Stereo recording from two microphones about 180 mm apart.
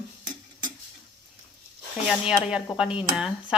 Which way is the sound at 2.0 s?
5° right (ahead or behind).